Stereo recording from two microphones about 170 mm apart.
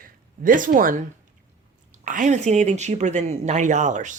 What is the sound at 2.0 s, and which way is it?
Speech, 50° right (ahead or behind).